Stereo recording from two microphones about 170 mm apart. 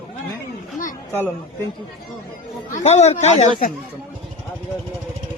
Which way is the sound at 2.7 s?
45° left (ahead or behind).